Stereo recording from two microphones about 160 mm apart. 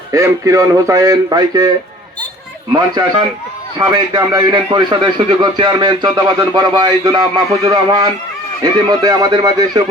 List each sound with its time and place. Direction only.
0.1 s a man's voice: 20° right (ahead or behind)
2.7 s a man's voice: 25° right (ahead or behind)